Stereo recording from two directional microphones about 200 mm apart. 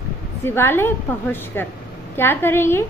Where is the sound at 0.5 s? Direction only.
10° left (ahead or behind).